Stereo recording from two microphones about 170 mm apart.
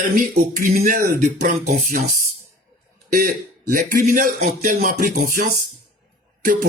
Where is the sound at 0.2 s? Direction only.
55° right (ahead or behind).